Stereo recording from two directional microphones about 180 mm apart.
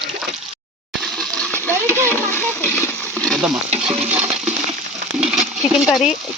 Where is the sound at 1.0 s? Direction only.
Centre (ahead or behind).